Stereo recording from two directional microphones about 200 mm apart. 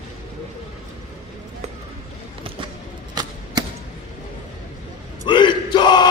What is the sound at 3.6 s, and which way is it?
Arrow, 20° right (ahead or behind).